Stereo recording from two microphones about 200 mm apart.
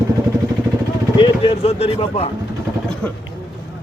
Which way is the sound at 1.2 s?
30° left (ahead or behind).